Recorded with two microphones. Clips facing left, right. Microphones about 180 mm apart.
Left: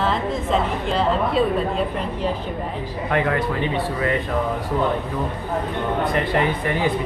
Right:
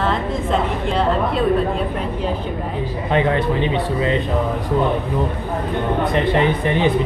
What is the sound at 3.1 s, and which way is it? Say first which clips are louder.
Speech: right 4 dB; 20° right (ahead or behind).